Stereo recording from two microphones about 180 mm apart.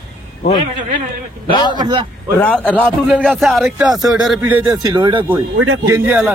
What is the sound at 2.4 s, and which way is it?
A man's voice, 10° left (ahead or behind).